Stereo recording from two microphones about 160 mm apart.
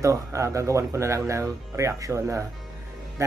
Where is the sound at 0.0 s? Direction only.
20° right (ahead or behind).